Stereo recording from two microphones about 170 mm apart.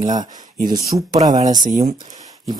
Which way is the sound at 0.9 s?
35° right (ahead or behind).